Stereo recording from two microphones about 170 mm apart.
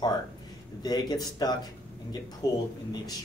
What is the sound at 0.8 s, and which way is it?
Speech, 25° left (ahead or behind).